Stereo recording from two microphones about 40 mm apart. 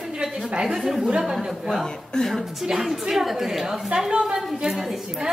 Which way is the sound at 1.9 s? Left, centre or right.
Centre.